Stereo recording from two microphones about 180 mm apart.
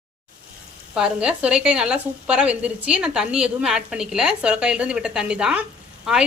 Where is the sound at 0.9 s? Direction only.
5° right (ahead or behind).